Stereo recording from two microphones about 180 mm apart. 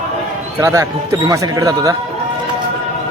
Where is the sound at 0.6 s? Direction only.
15° right (ahead or behind).